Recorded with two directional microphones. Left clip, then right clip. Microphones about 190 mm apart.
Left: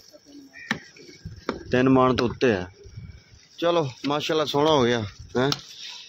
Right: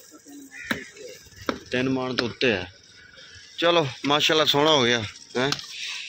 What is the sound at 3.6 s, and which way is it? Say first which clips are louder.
Speech: right 2 dB; 10° left (ahead or behind).